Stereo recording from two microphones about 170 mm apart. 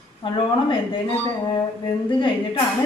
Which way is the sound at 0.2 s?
30° left (ahead or behind).